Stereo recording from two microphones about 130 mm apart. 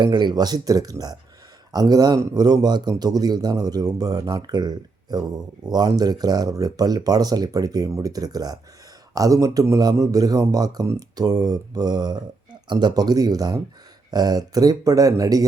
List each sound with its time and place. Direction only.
0.0 s a man's voice: 35° right (ahead or behind)